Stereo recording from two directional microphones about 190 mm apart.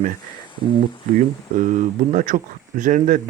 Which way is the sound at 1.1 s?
40° right (ahead or behind).